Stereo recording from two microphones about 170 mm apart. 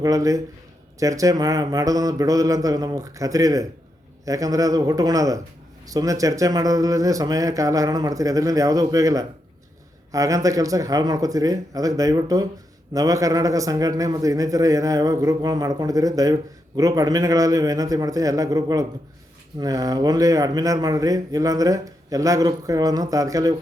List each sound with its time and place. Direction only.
0.0 s a man's voice: 20° right (ahead or behind)